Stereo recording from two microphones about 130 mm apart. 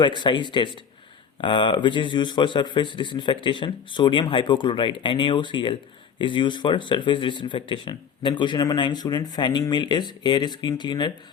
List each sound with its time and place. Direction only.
0.0 s speech: 35° left (ahead or behind)